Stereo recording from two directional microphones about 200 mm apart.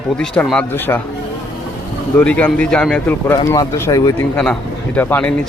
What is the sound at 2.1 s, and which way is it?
Speech, 5° left (ahead or behind).